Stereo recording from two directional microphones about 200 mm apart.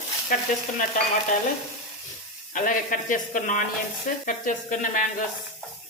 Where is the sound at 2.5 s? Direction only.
40° left (ahead or behind).